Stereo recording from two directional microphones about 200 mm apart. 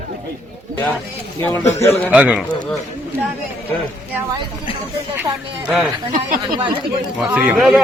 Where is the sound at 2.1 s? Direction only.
5° right (ahead or behind).